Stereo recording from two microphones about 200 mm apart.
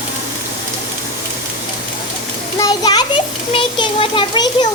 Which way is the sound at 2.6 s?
20° left (ahead or behind).